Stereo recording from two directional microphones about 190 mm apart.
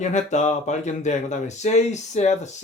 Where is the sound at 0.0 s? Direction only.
40° left (ahead or behind).